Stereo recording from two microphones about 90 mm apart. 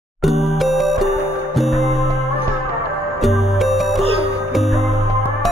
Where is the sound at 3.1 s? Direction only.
Centre (ahead or behind).